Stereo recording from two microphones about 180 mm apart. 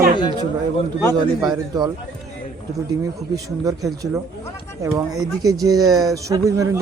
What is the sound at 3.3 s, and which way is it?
Speech, 20° right (ahead or behind).